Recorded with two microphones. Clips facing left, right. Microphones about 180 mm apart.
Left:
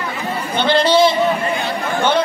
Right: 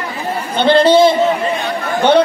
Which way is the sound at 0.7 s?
55° right (ahead or behind).